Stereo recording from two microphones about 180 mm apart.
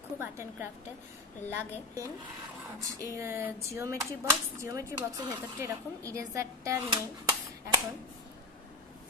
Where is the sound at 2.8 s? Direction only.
15° right (ahead or behind).